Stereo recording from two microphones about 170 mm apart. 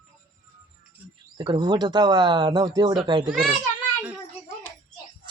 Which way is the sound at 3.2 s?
5° right (ahead or behind).